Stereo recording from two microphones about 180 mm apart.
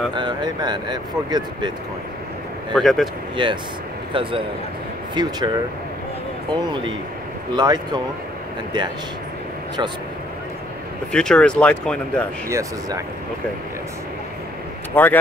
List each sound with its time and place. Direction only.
0.1 s speech: 25° right (ahead or behind)
2.7 s speech: centre (ahead or behind)
3.4 s speech: 25° right (ahead or behind)
6.5 s speech: 25° right (ahead or behind)
11.1 s speech: 5° left (ahead or behind)
12.4 s speech: 15° right (ahead or behind)
15.0 s speech: 10° left (ahead or behind)